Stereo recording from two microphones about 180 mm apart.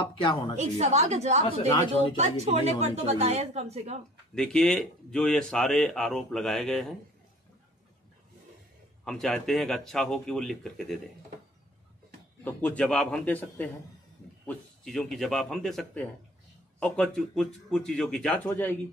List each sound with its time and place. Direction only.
0.2 s a woman's voice: 25° left (ahead or behind)
0.6 s a woman's voice: 40° right (ahead or behind)
4.4 s speech: 5° left (ahead or behind)
9.0 s speech: 5° left (ahead or behind)
12.4 s a man's voice: 10° left (ahead or behind)